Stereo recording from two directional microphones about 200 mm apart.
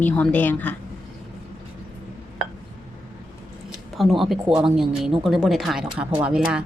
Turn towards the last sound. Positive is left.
turn(degrees=-5)  # may be behind; listen again after turning